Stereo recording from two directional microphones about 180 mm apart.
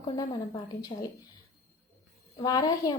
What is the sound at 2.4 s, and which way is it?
Speech, 20° left (ahead or behind).